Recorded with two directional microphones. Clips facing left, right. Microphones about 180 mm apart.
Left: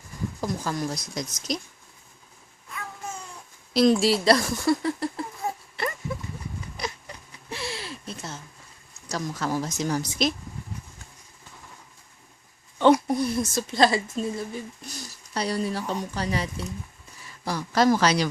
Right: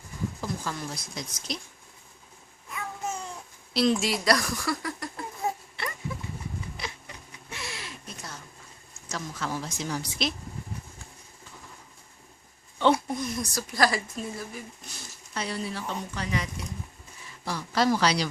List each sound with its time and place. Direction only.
0.4 s a woman's voice: 40° left (ahead or behind)
3.8 s speech: 35° left (ahead or behind)
7.5 s a sound: 30° left (ahead or behind)
9.0 s a woman's voice: 40° left (ahead or behind)
12.8 s a woman's voice: 35° left (ahead or behind)